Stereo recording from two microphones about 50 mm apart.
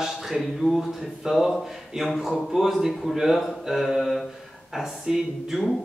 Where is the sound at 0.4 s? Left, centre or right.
Centre.